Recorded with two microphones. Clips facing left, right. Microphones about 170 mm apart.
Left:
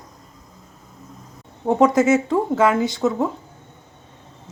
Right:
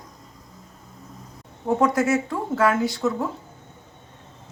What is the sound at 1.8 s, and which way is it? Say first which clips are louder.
Speech: left 6 dB; 20° left (ahead or behind).